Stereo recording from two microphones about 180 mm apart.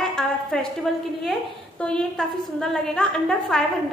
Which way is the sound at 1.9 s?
5° left (ahead or behind).